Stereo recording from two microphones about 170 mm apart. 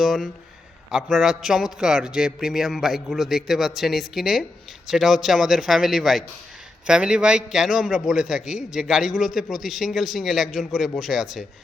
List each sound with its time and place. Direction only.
0.0 s a man's voice: centre (ahead or behind)